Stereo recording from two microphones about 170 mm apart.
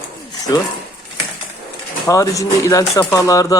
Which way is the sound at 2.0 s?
20° left (ahead or behind).